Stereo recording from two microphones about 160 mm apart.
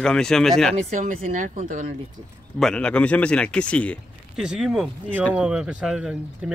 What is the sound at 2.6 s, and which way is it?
Speech, 5° left (ahead or behind).